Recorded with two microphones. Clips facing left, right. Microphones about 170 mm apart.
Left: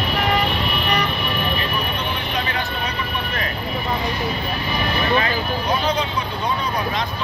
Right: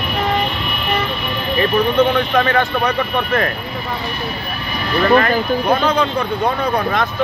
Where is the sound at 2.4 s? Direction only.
60° right (ahead or behind).